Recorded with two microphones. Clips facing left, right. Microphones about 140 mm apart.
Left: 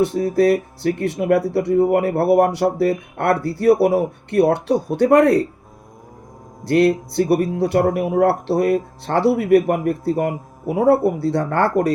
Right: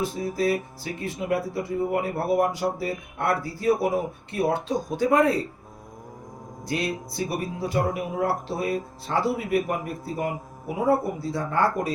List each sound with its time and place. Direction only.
0.0 s speech: 70° left (ahead or behind)
6.7 s speech: 65° left (ahead or behind)